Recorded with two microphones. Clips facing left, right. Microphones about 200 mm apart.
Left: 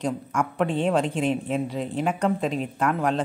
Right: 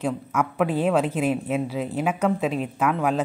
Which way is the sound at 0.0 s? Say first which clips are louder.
Right 1 dB; 5° right (ahead or behind).